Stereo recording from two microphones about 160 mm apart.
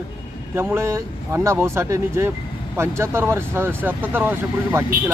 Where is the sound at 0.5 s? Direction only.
15° right (ahead or behind).